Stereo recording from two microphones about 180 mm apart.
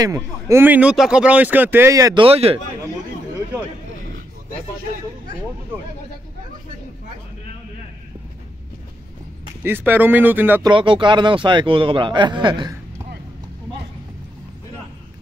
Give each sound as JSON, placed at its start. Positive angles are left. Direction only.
{"t": 0.0, "sound": "speech", "side_deg": -15}
{"t": 2.2, "sound": "speech", "side_deg": -35}
{"t": 9.6, "sound": "speech", "side_deg": -10}
{"t": 10.6, "sound": "a man's voice", "side_deg": -25}